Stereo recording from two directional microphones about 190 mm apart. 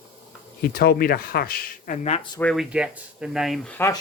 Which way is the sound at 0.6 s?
55° left (ahead or behind).